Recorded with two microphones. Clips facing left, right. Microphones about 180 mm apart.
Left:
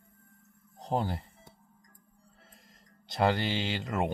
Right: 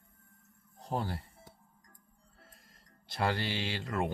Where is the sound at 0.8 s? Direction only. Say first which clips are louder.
Left 4 dB; 20° left (ahead or behind).